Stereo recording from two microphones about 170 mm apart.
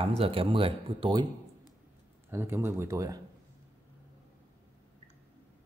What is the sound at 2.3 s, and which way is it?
Speech, 15° right (ahead or behind).